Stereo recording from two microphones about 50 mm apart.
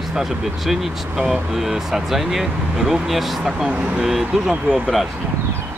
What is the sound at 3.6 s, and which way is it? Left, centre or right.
Speech, right.